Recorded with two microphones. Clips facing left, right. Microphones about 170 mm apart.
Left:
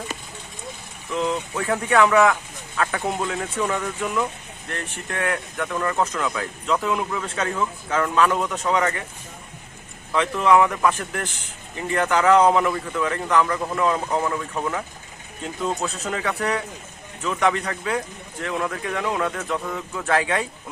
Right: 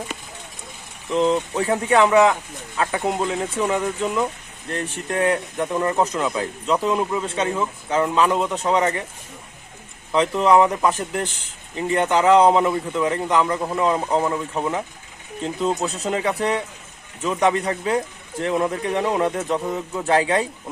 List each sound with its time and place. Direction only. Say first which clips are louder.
1.1 s speech: right 5 dB; 35° right (ahead or behind)
1.6 s speech: right 1 dB; 15° right (ahead or behind)
10.1 s speech: right 2 dB; 25° right (ahead or behind)